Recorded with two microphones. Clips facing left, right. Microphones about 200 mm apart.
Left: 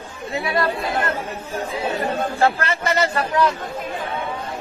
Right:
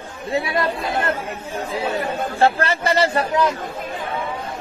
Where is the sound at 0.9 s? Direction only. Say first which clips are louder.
Right 1 dB; 30° right (ahead or behind).